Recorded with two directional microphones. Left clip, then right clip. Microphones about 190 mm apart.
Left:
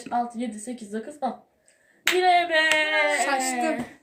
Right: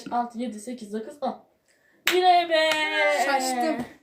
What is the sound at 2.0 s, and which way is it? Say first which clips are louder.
Clapping: right 1 dB; 5° right (ahead or behind).